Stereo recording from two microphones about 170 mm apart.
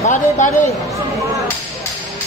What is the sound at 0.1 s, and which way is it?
Speech, 50° left (ahead or behind).